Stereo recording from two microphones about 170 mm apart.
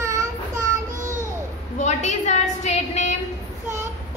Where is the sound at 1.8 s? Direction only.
40° left (ahead or behind).